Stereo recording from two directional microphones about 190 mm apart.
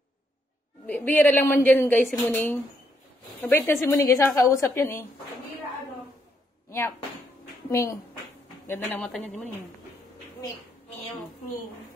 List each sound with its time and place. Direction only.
0.8 s a woman's voice: 10° left (ahead or behind)
7.7 s a woman's voice: 15° left (ahead or behind)